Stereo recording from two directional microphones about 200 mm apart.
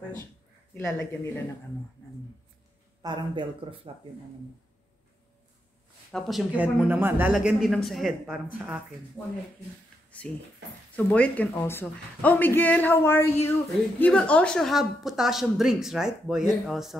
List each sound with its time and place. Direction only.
0.7 s speech: 15° left (ahead or behind)
3.0 s speech: 20° right (ahead or behind)
6.1 s a woman's voice: centre (ahead or behind)
11.1 s a woman's voice: 5° left (ahead or behind)